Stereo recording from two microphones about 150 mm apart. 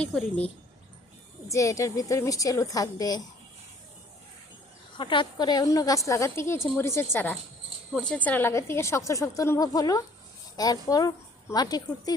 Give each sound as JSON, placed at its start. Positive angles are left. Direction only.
{"t": 0.0, "sound": "speech", "side_deg": 10}
{"t": 1.5, "sound": "a woman's voice", "side_deg": 20}
{"t": 4.9, "sound": "a woman's voice", "side_deg": 30}